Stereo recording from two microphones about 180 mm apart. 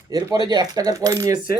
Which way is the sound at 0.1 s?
20° right (ahead or behind).